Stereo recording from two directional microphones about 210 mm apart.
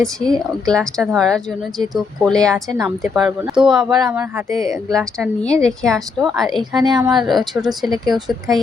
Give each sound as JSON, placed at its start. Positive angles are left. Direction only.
{"t": 0.3, "sound": "speech", "side_deg": -15}
{"t": 0.7, "sound": "speech", "side_deg": 0}
{"t": 6.8, "sound": "speech", "side_deg": -20}
{"t": 7.2, "sound": "speech", "side_deg": 0}